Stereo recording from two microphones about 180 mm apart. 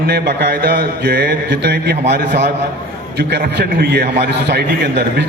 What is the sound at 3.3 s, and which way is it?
A man's voice, 65° right (ahead or behind).